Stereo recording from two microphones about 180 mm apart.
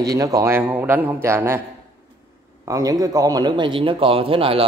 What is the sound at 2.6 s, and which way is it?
A man's voice, 20° right (ahead or behind).